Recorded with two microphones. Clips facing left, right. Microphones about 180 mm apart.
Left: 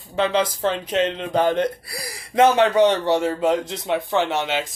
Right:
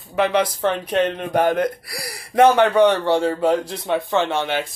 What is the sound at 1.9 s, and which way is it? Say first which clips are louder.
Speech: right 1 dB; 75° right (ahead or behind).